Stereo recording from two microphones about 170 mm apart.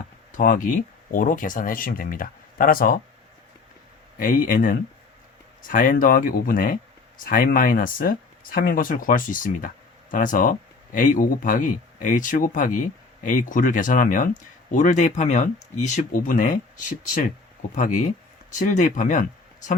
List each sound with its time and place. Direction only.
0.3 s speech: 50° left (ahead or behind)
4.2 s speech: 55° left (ahead or behind)
18.5 s speech: 50° left (ahead or behind)